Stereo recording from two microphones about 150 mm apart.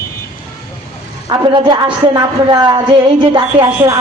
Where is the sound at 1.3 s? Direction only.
30° right (ahead or behind).